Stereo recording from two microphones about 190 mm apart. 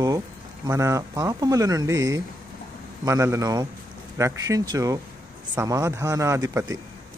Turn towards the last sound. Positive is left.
turn(degrees=-15)  # may be behind; listen again after turning